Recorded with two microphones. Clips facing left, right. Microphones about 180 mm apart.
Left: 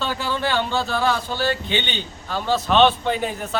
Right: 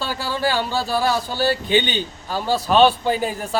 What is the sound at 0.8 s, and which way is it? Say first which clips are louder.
Speech: right 2 dB; 10° right (ahead or behind).